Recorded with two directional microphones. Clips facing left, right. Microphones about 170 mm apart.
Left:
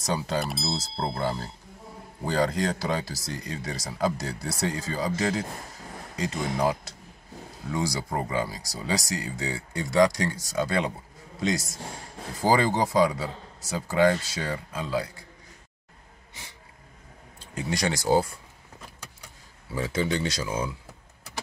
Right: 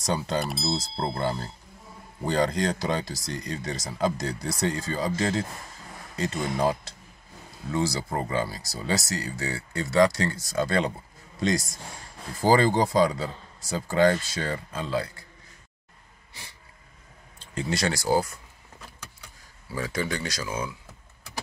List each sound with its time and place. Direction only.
0.0 s speech: 10° left (ahead or behind)
12.4 s speech: 10° left (ahead or behind)
17.4 s speech: 10° left (ahead or behind)
19.7 s speech: 25° left (ahead or behind)